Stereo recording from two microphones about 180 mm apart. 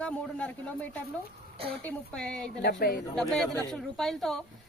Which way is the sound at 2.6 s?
60° left (ahead or behind).